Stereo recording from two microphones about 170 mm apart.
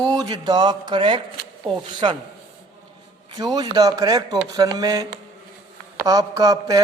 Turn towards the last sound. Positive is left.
turn(degrees=-20)  # may be behind; listen again after turning